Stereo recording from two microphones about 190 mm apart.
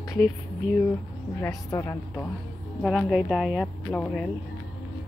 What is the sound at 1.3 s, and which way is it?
Speech, 15° left (ahead or behind).